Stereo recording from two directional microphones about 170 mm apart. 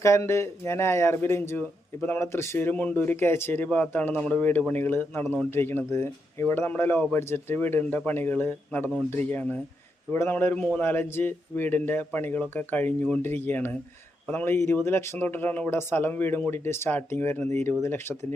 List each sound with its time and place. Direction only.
0.0 s speech: 15° left (ahead or behind)